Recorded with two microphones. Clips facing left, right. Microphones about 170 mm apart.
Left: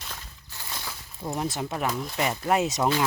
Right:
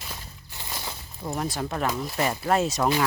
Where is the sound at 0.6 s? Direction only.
20° right (ahead or behind).